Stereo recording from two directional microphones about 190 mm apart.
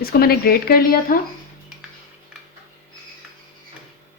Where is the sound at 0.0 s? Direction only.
55° left (ahead or behind).